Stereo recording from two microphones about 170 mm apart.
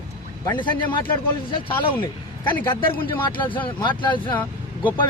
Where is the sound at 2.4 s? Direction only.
25° left (ahead or behind).